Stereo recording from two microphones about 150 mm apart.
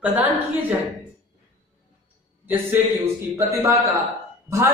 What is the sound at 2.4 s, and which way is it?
Speech, 15° right (ahead or behind).